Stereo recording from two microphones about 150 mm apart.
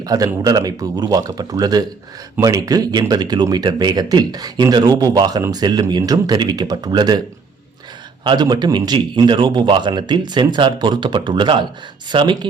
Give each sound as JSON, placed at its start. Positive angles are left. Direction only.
{"t": 0.0, "sound": "speech", "side_deg": -25}
{"t": 8.2, "sound": "a man's voice", "side_deg": -30}